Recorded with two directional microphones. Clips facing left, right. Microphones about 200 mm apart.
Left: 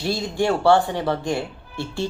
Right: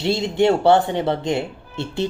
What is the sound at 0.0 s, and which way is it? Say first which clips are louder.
Speech: right 5 dB; 25° right (ahead or behind).